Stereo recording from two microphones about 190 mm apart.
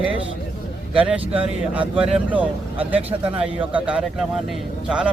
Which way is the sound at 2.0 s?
5° right (ahead or behind).